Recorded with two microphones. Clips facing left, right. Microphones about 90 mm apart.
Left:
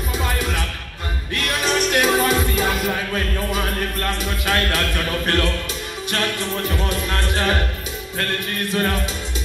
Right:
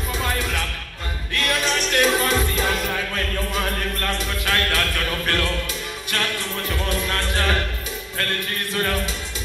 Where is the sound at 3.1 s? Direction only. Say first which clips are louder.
Left 2 dB; 10° left (ahead or behind).